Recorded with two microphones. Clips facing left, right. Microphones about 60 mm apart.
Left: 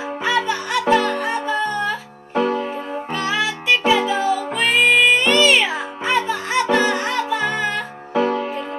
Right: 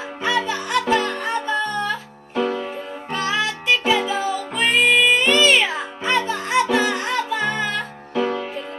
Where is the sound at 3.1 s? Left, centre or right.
Centre.